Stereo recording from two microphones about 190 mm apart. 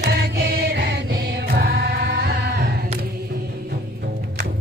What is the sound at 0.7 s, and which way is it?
Music, 60° right (ahead or behind).